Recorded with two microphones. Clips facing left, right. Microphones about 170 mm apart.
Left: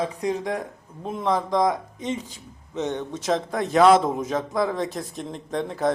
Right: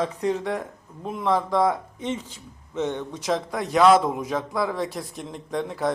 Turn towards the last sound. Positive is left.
turn(degrees=25)  # may be behind; listen again after turning